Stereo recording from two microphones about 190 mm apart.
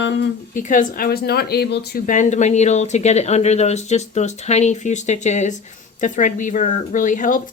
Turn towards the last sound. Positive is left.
turn(degrees=45)  # may be behind; listen again after turning